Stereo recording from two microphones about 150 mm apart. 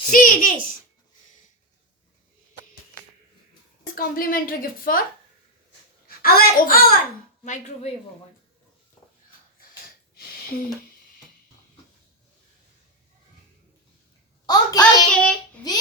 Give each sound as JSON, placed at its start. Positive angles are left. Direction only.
{"t": 0.1, "sound": "a woman's voice", "side_deg": 70}
{"t": 3.9, "sound": "a woman's voice", "side_deg": 75}
{"t": 6.2, "sound": "a woman's voice", "side_deg": 85}
{"t": 7.4, "sound": "speech", "side_deg": 50}
{"t": 14.4, "sound": "a child's voice", "side_deg": 25}
{"t": 15.1, "sound": "a child's voice", "side_deg": 5}